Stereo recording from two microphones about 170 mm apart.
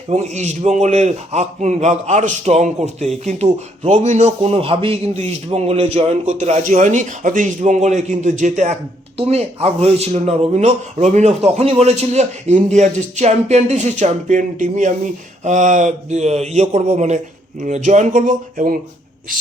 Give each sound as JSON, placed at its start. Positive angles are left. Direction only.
{"t": 0.1, "sound": "a man's voice", "side_deg": -45}
{"t": 9.1, "sound": "a man's voice", "side_deg": -35}